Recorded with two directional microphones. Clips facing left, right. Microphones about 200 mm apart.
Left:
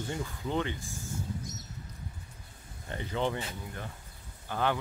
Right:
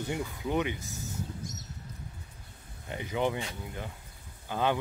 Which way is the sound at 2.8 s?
15° right (ahead or behind).